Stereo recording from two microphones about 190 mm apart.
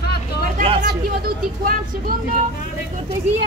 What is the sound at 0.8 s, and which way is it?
Speech, 55° right (ahead or behind).